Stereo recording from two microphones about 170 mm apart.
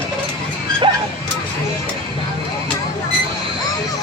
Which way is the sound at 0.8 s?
30° right (ahead or behind).